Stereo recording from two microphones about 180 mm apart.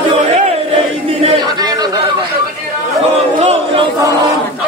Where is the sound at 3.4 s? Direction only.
30° right (ahead or behind).